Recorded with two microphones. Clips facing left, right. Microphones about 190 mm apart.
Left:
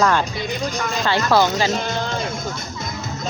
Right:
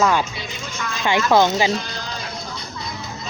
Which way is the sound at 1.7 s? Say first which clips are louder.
Left 3 dB; 50° left (ahead or behind).